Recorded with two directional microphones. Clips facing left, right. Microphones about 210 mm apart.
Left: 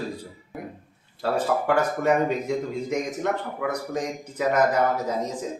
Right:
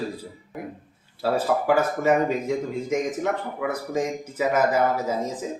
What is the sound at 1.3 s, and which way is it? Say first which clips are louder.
Speech: right 1 dB; 5° right (ahead or behind).